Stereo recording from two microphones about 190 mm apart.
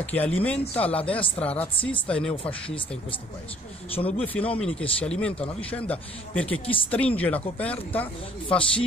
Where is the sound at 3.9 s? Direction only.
30° left (ahead or behind).